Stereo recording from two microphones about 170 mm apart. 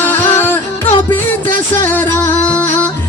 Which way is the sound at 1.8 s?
10° left (ahead or behind).